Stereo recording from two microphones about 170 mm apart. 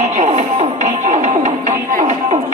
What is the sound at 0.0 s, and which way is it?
Music, 40° right (ahead or behind).